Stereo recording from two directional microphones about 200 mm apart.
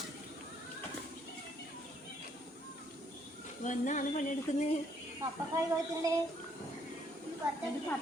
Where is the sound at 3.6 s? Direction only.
40° left (ahead or behind).